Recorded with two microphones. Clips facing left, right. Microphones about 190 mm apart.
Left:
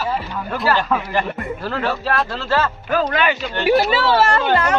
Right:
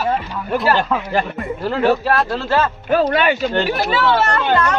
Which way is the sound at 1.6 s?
20° right (ahead or behind).